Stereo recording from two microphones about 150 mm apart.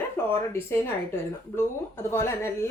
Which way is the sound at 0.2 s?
15° left (ahead or behind).